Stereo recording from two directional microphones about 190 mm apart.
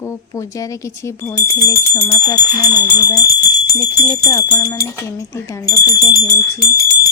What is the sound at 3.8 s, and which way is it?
Speech, 20° left (ahead or behind).